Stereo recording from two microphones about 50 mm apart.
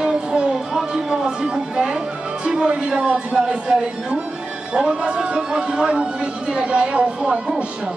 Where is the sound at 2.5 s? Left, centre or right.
Centre.